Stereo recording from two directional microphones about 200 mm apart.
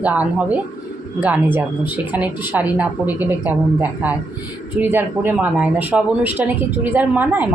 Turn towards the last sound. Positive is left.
turn(degrees=-10)  # may be behind; listen again after turning